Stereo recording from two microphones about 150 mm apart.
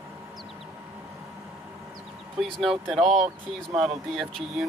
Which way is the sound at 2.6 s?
Centre (ahead or behind).